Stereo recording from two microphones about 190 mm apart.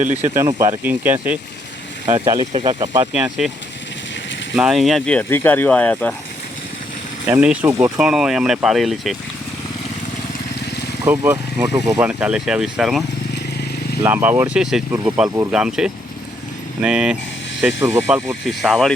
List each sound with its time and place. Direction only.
0.1 s speech: 10° right (ahead or behind)
2.5 s speech: 30° right (ahead or behind)
3.1 s speech: 5° right (ahead or behind)
4.5 s speech: 5° right (ahead or behind)
7.3 s speech: 5° right (ahead or behind)
11.0 s speech: 10° right (ahead or behind)
18.4 s speech: centre (ahead or behind)